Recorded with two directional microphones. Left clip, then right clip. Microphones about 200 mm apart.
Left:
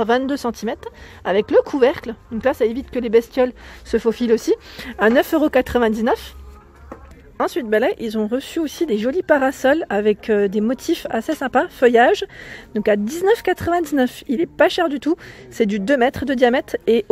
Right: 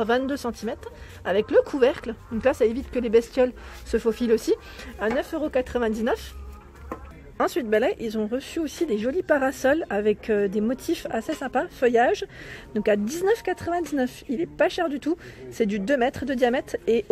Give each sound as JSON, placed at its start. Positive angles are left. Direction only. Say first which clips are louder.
{"t": 0.0, "sound": "speech", "louder": "left 5 dB", "side_deg": 20}
{"t": 4.8, "sound": "speech", "louder": "left 11 dB", "side_deg": 40}
{"t": 5.5, "sound": "speech", "louder": "left 8 dB", "side_deg": 30}
{"t": 7.3, "sound": "speech", "louder": "left 4 dB", "side_deg": 15}